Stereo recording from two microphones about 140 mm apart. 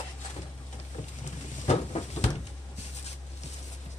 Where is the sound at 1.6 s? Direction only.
45° left (ahead or behind).